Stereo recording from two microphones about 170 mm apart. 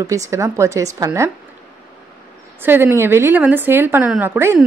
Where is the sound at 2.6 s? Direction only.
10° right (ahead or behind).